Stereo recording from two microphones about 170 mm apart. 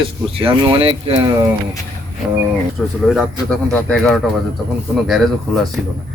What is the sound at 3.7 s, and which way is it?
Speech, 5° left (ahead or behind).